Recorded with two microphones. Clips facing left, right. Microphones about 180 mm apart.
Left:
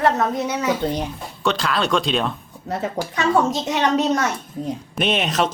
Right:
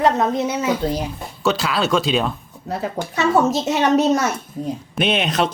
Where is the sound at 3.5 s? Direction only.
25° right (ahead or behind).